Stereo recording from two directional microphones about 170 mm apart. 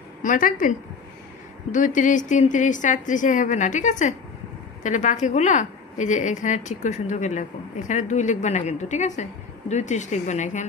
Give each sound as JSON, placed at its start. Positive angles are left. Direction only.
{"t": 0.2, "sound": "a woman's voice", "side_deg": 50}